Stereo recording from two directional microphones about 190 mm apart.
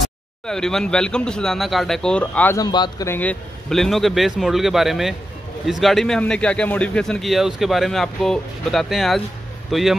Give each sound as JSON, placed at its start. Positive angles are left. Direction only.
{"t": 0.0, "sound": "a man's voice", "side_deg": 5}
{"t": 2.6, "sound": "a man's voice", "side_deg": 20}
{"t": 3.2, "sound": "a man's voice", "side_deg": 5}